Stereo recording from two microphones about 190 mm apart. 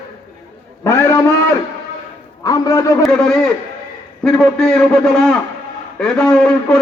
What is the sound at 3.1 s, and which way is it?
A man's voice, 5° left (ahead or behind).